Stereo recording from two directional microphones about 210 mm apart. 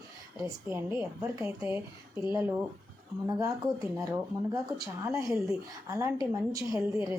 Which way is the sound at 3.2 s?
15° right (ahead or behind).